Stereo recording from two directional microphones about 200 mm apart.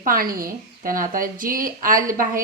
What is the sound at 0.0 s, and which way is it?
A woman's voice, 45° right (ahead or behind).